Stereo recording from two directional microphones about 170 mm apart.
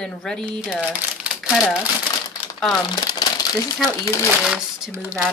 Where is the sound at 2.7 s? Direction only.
20° left (ahead or behind).